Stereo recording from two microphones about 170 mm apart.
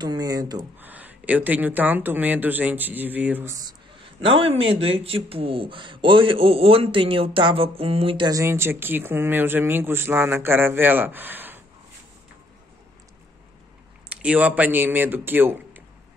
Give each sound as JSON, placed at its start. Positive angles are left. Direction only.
{"t": 0.0, "sound": "speech", "side_deg": -25}
{"t": 0.7, "sound": "speech", "side_deg": -10}
{"t": 4.0, "sound": "speech", "side_deg": -30}
{"t": 8.3, "sound": "speech", "side_deg": -15}
{"t": 14.2, "sound": "speech", "side_deg": -10}